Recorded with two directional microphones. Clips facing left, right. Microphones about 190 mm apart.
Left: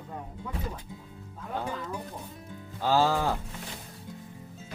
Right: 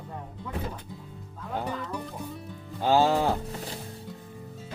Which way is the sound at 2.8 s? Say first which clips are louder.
Right 3 dB; 20° right (ahead or behind).